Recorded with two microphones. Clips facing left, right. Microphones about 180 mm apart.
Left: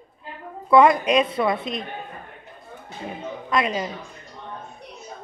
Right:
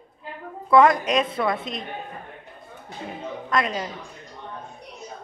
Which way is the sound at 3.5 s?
5° left (ahead or behind).